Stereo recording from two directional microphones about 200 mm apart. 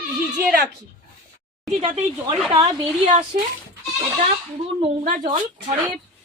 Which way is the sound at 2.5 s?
20° right (ahead or behind).